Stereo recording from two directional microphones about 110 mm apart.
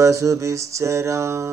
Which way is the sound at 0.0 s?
25° right (ahead or behind).